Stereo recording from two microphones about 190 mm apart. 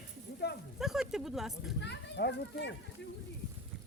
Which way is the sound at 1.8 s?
60° left (ahead or behind).